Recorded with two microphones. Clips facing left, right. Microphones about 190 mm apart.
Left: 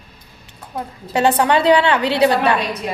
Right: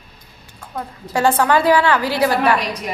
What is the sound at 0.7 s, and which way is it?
A woman's voice, 20° left (ahead or behind).